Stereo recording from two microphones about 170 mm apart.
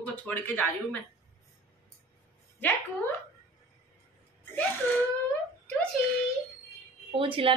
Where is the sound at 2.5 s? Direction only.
10° left (ahead or behind).